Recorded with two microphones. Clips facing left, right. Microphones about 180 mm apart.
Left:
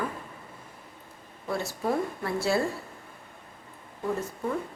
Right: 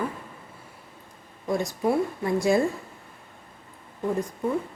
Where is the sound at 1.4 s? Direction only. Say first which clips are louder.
Right 4 dB; 15° right (ahead or behind).